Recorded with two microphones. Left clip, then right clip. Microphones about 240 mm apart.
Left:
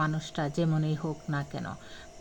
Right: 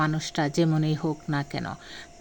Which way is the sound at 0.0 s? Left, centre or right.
Right.